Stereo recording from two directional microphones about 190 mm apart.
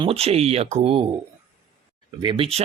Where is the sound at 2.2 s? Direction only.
25° right (ahead or behind).